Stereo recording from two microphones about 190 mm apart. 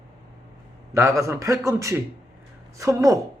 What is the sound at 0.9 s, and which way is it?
A man's voice, 15° right (ahead or behind).